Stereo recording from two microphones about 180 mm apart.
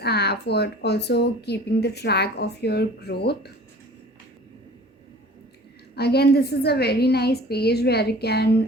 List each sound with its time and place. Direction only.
0.0 s speech: 65° left (ahead or behind)
6.0 s speech: 65° left (ahead or behind)